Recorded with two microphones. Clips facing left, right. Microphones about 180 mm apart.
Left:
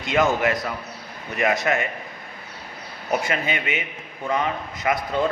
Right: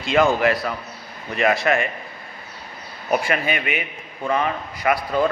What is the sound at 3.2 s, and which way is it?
A man's voice, 20° left (ahead or behind).